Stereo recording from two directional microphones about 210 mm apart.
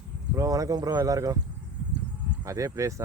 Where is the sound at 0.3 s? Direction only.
15° right (ahead or behind).